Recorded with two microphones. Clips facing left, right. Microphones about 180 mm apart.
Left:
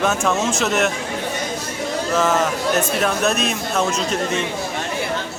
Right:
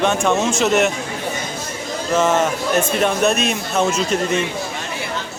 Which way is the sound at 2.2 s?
Centre (ahead or behind).